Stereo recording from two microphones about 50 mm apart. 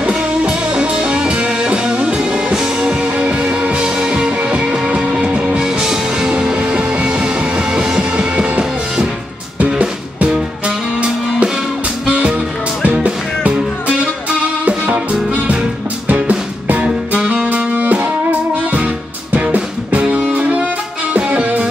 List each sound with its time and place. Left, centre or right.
0.0 s music: right
16.1 s music: right
16.8 s music: centre
19.3 s music: right